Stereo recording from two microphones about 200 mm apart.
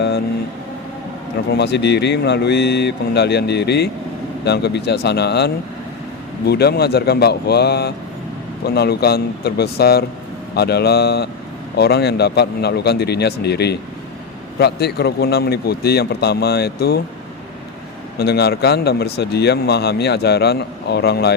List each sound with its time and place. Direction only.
1.5 s speech: 60° left (ahead or behind)
18.2 s speech: 55° left (ahead or behind)